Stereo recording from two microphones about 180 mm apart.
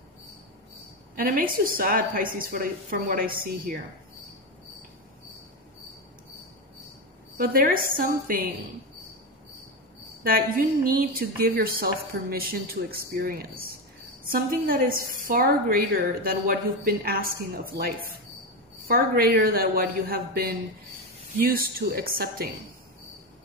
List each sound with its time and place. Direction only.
1.1 s a woman's voice: 50° right (ahead or behind)
7.3 s a woman's voice: 55° right (ahead or behind)
10.2 s a woman's voice: 55° right (ahead or behind)
18.9 s a woman's voice: 55° right (ahead or behind)